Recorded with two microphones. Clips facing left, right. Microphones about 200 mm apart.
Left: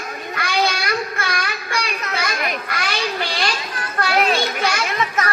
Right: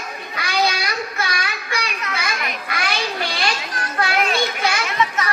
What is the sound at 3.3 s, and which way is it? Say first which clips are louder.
Music: even; 45° right (ahead or behind).